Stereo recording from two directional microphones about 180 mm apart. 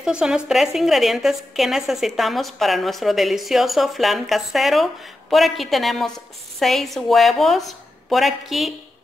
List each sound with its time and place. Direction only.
0.0 s a woman's voice: 5° right (ahead or behind)